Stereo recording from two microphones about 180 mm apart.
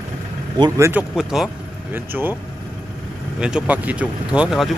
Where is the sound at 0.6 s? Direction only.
20° right (ahead or behind).